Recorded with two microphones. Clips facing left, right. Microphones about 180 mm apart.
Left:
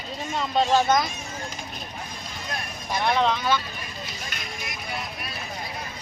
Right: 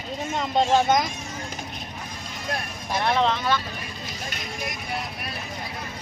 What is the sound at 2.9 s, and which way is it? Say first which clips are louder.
Speech: even; centre (ahead or behind).